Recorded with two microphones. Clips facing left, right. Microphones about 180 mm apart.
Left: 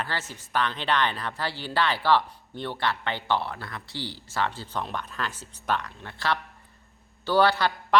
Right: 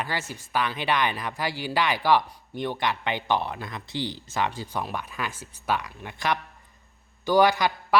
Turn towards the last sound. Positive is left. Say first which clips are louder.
# even
turn(degrees=-10)  # may be behind; listen again after turning